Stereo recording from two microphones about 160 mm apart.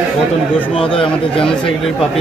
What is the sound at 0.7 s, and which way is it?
Speech, 35° left (ahead or behind).